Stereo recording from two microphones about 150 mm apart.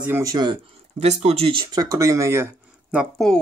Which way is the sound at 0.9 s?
45° right (ahead or behind).